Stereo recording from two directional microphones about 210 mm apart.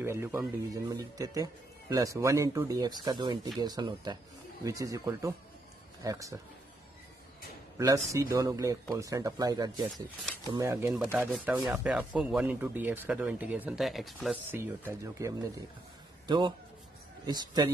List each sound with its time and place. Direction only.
0.0 s speech: 10° right (ahead or behind)
7.7 s speech: 15° right (ahead or behind)
14.5 s a man's voice: 10° right (ahead or behind)